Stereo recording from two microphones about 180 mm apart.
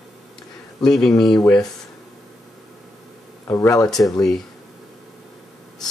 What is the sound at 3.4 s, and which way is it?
Speech, 15° left (ahead or behind).